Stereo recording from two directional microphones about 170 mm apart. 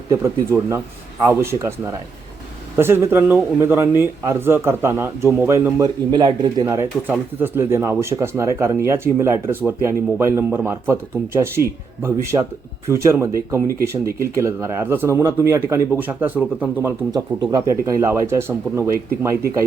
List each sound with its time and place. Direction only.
0.1 s a man's voice: 15° right (ahead or behind)
6.1 s speech: 25° right (ahead or behind)
7.1 s a man's voice: 10° right (ahead or behind)
13.7 s speech: 60° right (ahead or behind)
14.2 s a man's voice: 15° right (ahead or behind)
17.1 s a man's voice: 25° right (ahead or behind)